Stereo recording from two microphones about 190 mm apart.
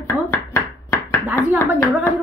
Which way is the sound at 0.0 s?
15° left (ahead or behind).